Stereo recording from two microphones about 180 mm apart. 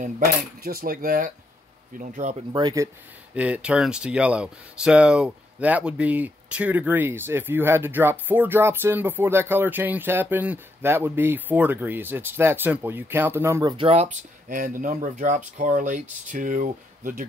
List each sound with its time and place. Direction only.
0.0 s speech: 55° right (ahead or behind)
2.5 s speech: 20° right (ahead or behind)
3.3 s speech: 10° right (ahead or behind)
13.7 s speech: 35° right (ahead or behind); by 17.3 s 50° right (ahead or behind)